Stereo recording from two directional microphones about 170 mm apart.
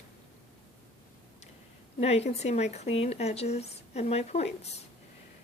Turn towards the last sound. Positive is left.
turn(degrees=40)  # may be behind; listen again after turning